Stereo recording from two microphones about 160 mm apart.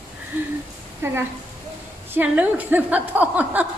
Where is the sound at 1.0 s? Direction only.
15° right (ahead or behind).